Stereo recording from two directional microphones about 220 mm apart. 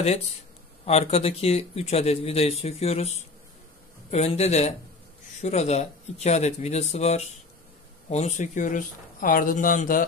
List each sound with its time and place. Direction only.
0.8 s speech: 30° left (ahead or behind)